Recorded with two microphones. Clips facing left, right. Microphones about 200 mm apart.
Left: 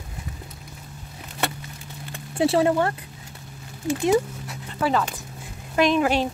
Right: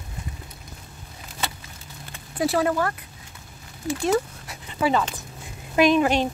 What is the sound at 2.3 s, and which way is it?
Speech, 25° left (ahead or behind).